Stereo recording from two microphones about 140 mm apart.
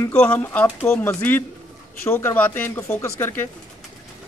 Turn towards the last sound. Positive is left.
turn(degrees=15)  # may be behind; listen again after turning